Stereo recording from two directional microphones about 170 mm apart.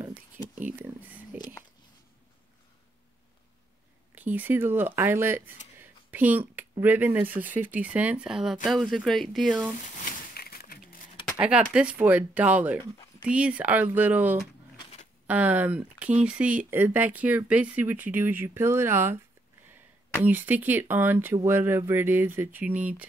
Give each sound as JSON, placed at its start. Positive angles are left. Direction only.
{"t": 0.6, "sound": "speech", "side_deg": -10}
{"t": 4.1, "sound": "speech", "side_deg": -10}
{"t": 5.8, "sound": "a sound", "side_deg": -10}
{"t": 6.8, "sound": "speech", "side_deg": -10}
{"t": 10.3, "sound": "a sound", "side_deg": 60}
{"t": 11.3, "sound": "speech", "side_deg": -5}
{"t": 14.8, "sound": "a sound", "side_deg": 35}
{"t": 15.2, "sound": "speech", "side_deg": -10}
{"t": 20.2, "sound": "speech", "side_deg": -10}